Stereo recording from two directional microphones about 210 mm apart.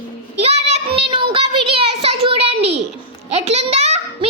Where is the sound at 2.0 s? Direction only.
30° right (ahead or behind).